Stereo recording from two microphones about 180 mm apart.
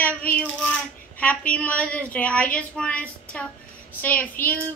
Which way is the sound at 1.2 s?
10° left (ahead or behind).